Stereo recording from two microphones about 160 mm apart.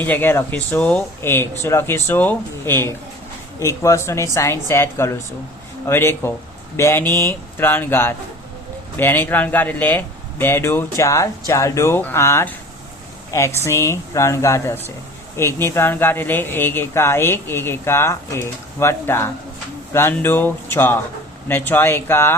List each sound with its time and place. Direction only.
0.0 s speech: 10° left (ahead or behind)